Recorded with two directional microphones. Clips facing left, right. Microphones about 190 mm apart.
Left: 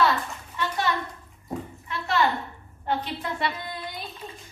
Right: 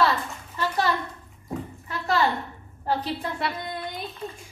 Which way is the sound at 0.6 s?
40° right (ahead or behind).